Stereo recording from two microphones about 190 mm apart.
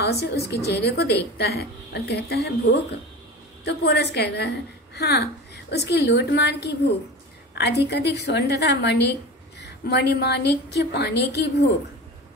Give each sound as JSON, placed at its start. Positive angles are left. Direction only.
{"t": 0.0, "sound": "a woman's voice", "side_deg": 60}